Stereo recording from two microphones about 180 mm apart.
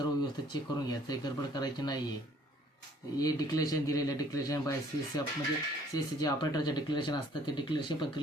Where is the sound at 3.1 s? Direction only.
20° left (ahead or behind).